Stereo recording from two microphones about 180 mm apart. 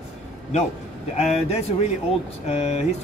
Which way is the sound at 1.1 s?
35° left (ahead or behind).